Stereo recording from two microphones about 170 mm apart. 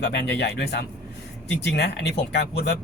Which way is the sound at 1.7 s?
75° left (ahead or behind).